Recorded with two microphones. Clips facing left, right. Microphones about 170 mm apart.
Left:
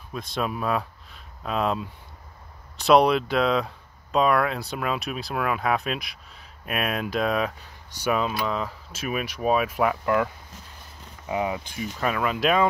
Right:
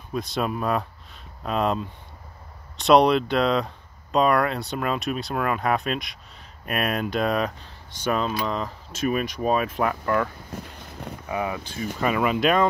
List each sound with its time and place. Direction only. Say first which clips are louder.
0.1 s speech: right 3 dB; centre (ahead or behind)
10.5 s a sound: right 9 dB; 60° right (ahead or behind)
11.2 s speech: left 2 dB; 20° left (ahead or behind)
12.0 s speech: right 3 dB; 5° right (ahead or behind)